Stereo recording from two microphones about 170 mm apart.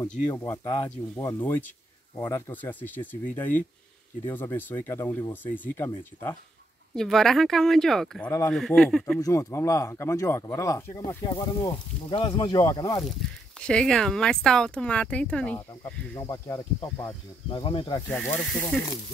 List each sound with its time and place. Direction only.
0.3 s speech: 20° left (ahead or behind)
7.0 s speech: centre (ahead or behind)
8.3 s speech: 15° left (ahead or behind)
8.5 s speech: 5° left (ahead or behind)
9.2 s speech: 20° left (ahead or behind)
13.6 s speech: 5° left (ahead or behind)
16.2 s speech: 20° left (ahead or behind)
18.1 s speech: 5° left (ahead or behind)